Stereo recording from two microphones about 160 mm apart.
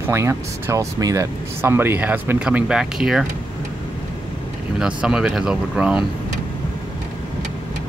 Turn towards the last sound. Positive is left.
turn(degrees=-5)  # may be behind; listen again after turning